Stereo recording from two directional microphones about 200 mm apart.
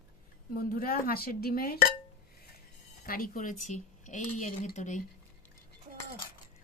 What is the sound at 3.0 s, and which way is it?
Speech, 45° left (ahead or behind).